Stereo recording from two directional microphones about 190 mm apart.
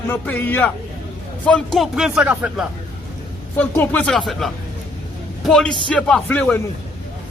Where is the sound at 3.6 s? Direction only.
5° left (ahead or behind).